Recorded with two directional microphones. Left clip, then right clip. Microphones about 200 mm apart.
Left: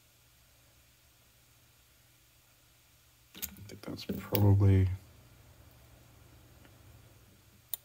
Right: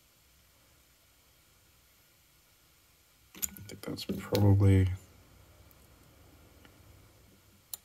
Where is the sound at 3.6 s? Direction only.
15° right (ahead or behind).